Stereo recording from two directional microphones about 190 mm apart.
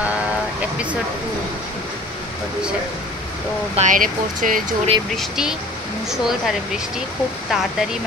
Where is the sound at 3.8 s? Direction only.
45° right (ahead or behind).